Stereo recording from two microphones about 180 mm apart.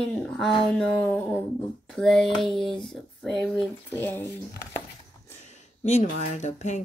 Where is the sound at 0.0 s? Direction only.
5° left (ahead or behind).